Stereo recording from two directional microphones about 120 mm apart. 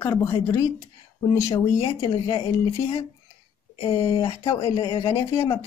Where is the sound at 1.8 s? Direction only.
50° left (ahead or behind).